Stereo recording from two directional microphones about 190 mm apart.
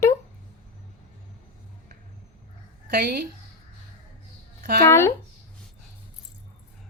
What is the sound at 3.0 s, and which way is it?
Speech, 50° right (ahead or behind).